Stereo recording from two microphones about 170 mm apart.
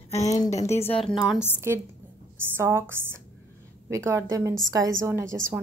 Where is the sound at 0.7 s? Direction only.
35° left (ahead or behind).